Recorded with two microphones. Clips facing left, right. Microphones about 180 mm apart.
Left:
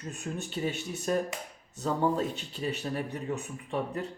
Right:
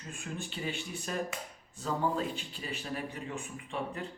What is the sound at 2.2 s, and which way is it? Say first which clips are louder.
Speech: left 4 dB; 40° left (ahead or behind).